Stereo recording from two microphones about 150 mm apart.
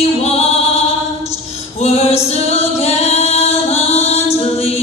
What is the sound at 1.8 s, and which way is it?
Music, 45° left (ahead or behind).